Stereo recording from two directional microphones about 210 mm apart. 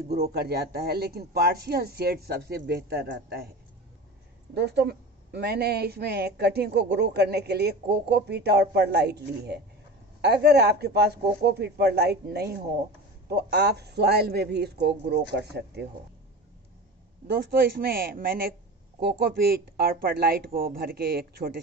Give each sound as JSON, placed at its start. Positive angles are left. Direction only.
{"t": 0.1, "sound": "a woman's voice", "side_deg": -50}
{"t": 4.6, "sound": "a woman's voice", "side_deg": -50}
{"t": 17.6, "sound": "a woman's voice", "side_deg": -45}